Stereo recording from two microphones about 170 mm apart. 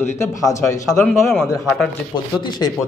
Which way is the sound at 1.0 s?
10° left (ahead or behind).